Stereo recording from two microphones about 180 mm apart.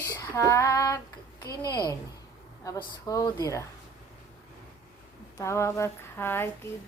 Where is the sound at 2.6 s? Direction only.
20° left (ahead or behind).